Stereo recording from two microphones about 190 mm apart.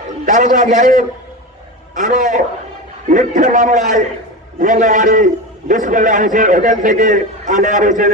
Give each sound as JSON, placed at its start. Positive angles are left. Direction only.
{"t": 0.2, "sound": "a man's voice", "side_deg": -40}